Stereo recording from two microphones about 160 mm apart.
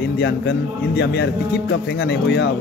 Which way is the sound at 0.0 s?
90° left.